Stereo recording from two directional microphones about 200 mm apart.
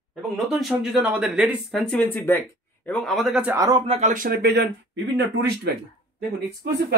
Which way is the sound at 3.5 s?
20° right (ahead or behind).